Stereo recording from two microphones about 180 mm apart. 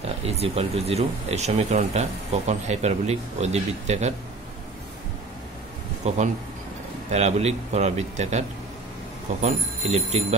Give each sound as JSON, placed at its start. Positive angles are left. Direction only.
{"t": 0.0, "sound": "speech", "side_deg": -35}
{"t": 6.0, "sound": "speech", "side_deg": -40}